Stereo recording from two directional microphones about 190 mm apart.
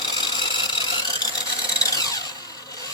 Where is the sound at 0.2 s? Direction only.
25° left (ahead or behind).